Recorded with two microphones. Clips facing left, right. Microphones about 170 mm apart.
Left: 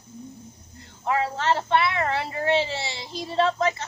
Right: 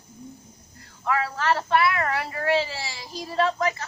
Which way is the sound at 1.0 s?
25° left (ahead or behind).